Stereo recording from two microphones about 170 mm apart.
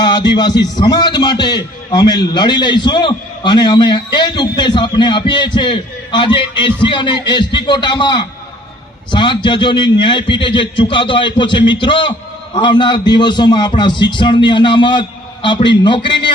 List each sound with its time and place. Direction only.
0.0 s a man's voice: 25° left (ahead or behind)